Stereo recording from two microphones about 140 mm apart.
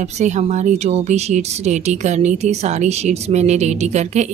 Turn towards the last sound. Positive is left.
turn(degrees=-55)  # may be behind; listen again after turning